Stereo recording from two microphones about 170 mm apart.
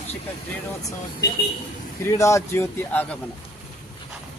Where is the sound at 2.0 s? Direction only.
15° left (ahead or behind).